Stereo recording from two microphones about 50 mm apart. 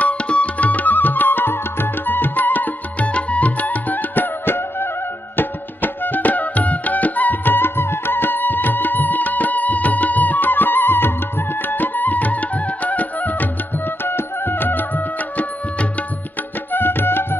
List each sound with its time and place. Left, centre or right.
0.0 s music: left
3.1 s music: left
16.7 s music: left